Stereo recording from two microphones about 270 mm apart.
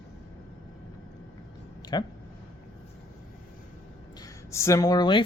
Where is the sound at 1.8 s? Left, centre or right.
Centre.